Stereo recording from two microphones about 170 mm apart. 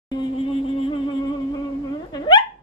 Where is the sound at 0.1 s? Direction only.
30° left (ahead or behind).